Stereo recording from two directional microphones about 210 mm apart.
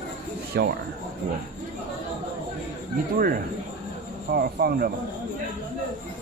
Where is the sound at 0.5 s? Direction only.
50° right (ahead or behind).